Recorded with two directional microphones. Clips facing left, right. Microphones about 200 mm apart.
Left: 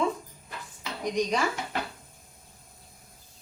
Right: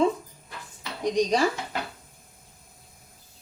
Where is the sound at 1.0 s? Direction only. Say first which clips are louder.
Right 4 dB; 35° right (ahead or behind).